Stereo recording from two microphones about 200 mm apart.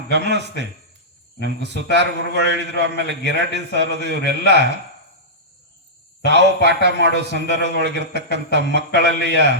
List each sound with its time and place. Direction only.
0.1 s a man's voice: 60° right (ahead or behind)
6.2 s a man's voice: 60° right (ahead or behind)